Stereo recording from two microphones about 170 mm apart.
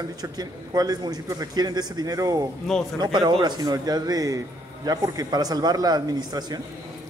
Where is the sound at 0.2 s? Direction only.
25° right (ahead or behind).